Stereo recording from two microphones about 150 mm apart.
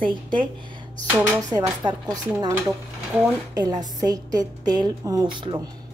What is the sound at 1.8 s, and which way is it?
A woman's voice, 20° right (ahead or behind).